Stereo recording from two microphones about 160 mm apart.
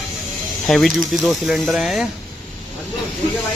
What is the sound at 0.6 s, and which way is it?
Speech, centre (ahead or behind).